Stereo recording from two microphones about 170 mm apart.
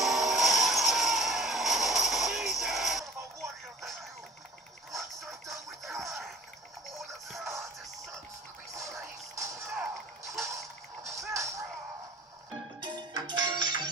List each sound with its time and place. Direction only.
0.0 s mechanisms: centre (ahead or behind)
4.9 s music: centre (ahead or behind)
8.7 s music: 20° right (ahead or behind)
11.1 s music: 20° right (ahead or behind)
12.8 s music: 25° right (ahead or behind)